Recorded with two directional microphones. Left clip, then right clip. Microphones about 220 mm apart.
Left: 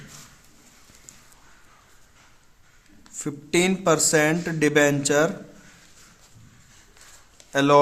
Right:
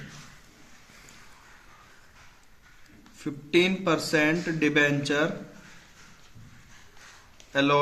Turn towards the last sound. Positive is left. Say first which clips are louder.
# left 6 dB
turn(degrees=55)  # may be behind; listen again after turning